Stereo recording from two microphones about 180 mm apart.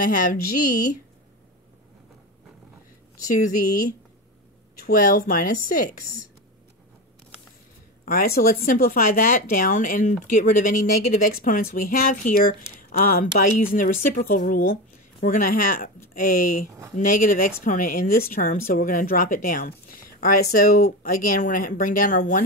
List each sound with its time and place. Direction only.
0.0 s speech: 50° left (ahead or behind)
3.3 s speech: 50° left (ahead or behind)
8.0 s a sound: 50° left (ahead or behind)
8.4 s speech: 55° left (ahead or behind)